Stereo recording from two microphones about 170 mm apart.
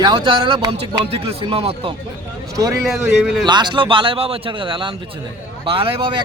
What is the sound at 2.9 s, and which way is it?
Speech, centre (ahead or behind).